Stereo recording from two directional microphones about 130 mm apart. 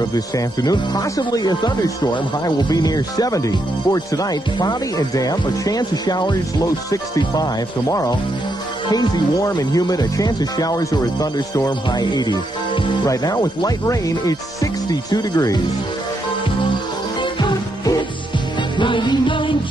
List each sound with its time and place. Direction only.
0.1 s speech: 30° left (ahead or behind)
8.9 s speech: 30° left (ahead or behind)
17.2 s music: 35° left (ahead or behind)